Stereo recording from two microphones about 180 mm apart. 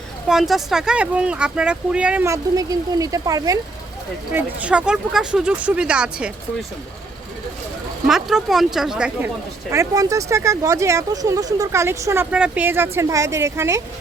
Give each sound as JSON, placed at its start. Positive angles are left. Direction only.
{"t": 0.3, "sound": "speech", "side_deg": 0}
{"t": 4.3, "sound": "speech", "side_deg": -5}
{"t": 8.0, "sound": "speech", "side_deg": 0}
{"t": 9.7, "sound": "speech", "side_deg": -20}